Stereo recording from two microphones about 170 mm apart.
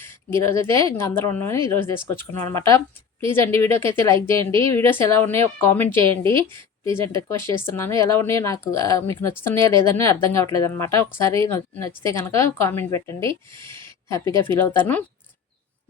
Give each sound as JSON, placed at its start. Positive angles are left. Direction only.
{"t": 0.0, "sound": "speech", "side_deg": 15}